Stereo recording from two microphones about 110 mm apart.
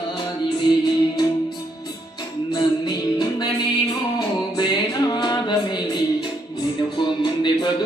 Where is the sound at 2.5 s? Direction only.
40° left (ahead or behind).